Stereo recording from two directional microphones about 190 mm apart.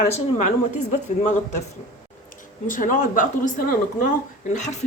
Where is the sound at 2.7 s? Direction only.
45° left (ahead or behind).